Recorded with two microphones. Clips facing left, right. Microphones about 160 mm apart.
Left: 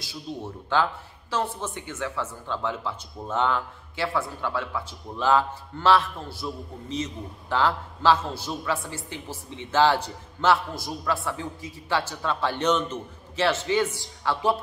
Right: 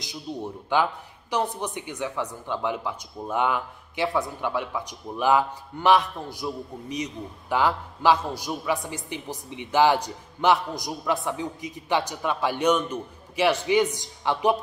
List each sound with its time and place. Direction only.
0.0 s speech: 15° right (ahead or behind)